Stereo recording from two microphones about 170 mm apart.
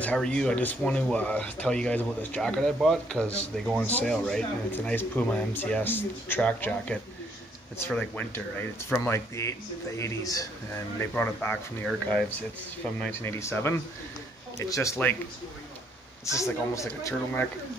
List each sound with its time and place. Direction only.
0.0 s speech: 5° left (ahead or behind)
16.3 s speech: 20° left (ahead or behind)